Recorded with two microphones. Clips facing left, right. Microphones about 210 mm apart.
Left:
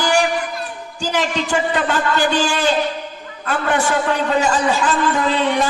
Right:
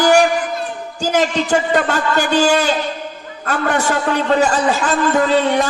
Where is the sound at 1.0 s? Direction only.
40° right (ahead or behind).